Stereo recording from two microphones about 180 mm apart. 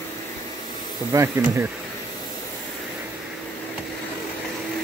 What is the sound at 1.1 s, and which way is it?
Speech, 15° right (ahead or behind).